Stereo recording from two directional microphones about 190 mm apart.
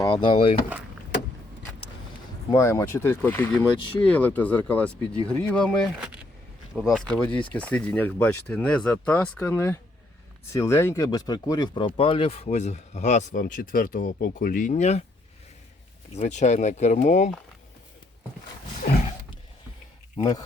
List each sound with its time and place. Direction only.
0.0 s speech: 25° left (ahead or behind)
2.5 s speech: 15° left (ahead or behind); by 15.0 s 35° left (ahead or behind)
16.1 s speech: 40° left (ahead or behind)
20.1 s speech: 20° left (ahead or behind)